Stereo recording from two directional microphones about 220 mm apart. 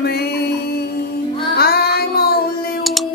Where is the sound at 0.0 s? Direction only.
45° left (ahead or behind).